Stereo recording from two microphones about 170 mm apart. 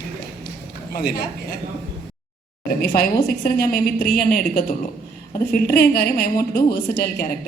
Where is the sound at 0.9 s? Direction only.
65° left (ahead or behind).